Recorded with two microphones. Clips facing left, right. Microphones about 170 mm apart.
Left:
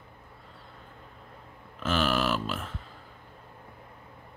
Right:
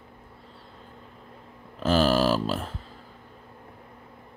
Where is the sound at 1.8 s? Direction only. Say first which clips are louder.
Right 6 dB; 35° right (ahead or behind).